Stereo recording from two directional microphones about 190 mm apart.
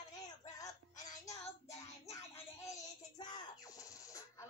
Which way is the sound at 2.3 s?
15° left (ahead or behind).